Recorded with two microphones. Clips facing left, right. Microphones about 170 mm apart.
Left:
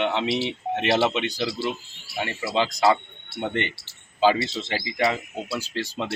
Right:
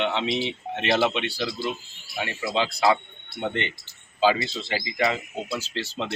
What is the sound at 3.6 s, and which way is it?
Speech, 70° left (ahead or behind).